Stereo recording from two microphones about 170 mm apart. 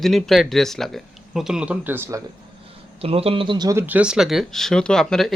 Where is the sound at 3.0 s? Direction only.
35° right (ahead or behind).